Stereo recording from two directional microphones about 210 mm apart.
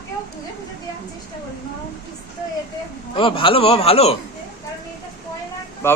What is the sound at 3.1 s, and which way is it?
A man's voice, 25° left (ahead or behind).